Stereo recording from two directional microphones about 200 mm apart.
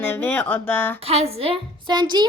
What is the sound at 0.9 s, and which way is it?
A woman's voice, 30° right (ahead or behind).